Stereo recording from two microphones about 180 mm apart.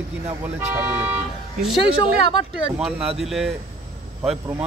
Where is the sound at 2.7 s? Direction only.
5° right (ahead or behind).